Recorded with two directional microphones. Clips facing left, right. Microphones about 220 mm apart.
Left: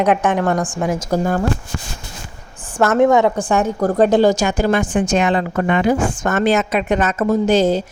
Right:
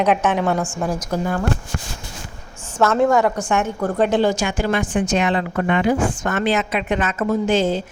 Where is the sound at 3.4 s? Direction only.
35° left (ahead or behind).